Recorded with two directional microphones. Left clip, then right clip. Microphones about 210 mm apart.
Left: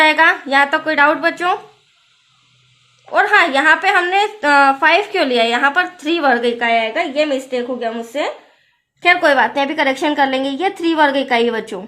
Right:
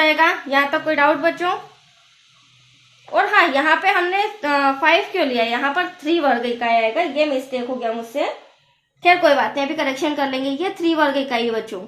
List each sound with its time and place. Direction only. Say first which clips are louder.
0.0 s a woman's voice: left 4 dB; 50° left (ahead or behind)
3.1 s a woman's voice: left 3 dB; 35° left (ahead or behind)